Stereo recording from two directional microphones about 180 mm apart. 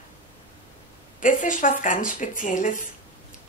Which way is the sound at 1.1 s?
45° left (ahead or behind).